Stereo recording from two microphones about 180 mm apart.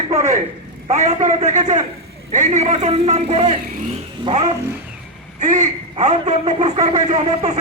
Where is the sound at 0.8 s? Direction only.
40° right (ahead or behind).